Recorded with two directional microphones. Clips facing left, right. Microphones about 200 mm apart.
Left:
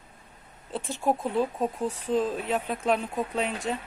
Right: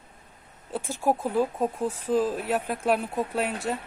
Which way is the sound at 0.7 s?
5° right (ahead or behind).